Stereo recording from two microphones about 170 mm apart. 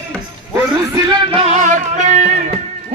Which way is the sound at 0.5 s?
30° right (ahead or behind).